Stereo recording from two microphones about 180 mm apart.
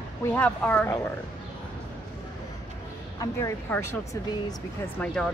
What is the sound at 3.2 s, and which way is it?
Speech, 15° left (ahead or behind).